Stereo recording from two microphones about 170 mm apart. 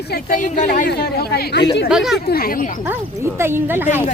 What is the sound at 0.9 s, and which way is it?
Speech, 70° left (ahead or behind).